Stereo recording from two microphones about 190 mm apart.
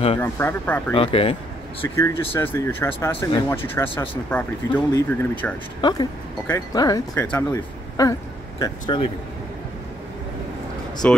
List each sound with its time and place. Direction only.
0.2 s speech: 10° left (ahead or behind)
0.9 s speech: 30° left (ahead or behind)
2.0 s speech: 15° left (ahead or behind)
4.9 s speech: 20° left (ahead or behind)
11.0 s speech: 10° left (ahead or behind)